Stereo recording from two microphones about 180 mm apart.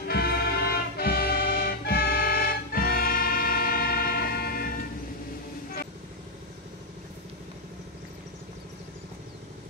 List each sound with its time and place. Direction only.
0.1 s music: 60° left (ahead or behind)